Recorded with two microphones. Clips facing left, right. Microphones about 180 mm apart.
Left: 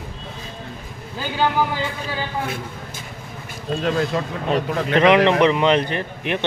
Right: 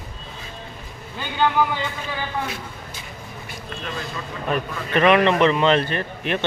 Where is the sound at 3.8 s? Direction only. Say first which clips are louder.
Left 11 dB; 75° left (ahead or behind).